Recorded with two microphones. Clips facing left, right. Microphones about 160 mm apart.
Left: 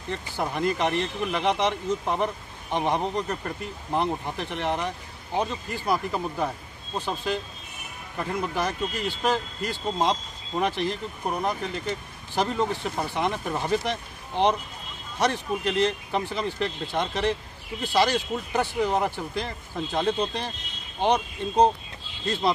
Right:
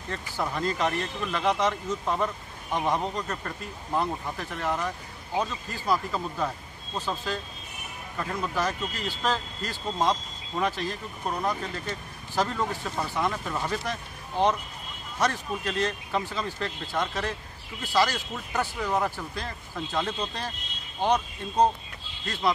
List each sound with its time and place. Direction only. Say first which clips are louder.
0.1 s speech: left 2 dB; 20° left (ahead or behind)